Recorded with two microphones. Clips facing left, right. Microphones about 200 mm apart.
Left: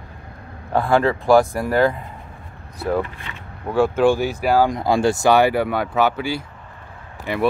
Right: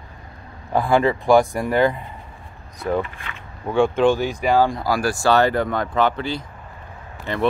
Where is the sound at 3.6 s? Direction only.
5° left (ahead or behind).